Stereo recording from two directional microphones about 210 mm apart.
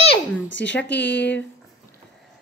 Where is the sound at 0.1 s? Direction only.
60° left (ahead or behind).